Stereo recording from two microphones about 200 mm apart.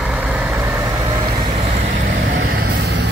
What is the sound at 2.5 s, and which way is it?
Vehicle, 55° right (ahead or behind).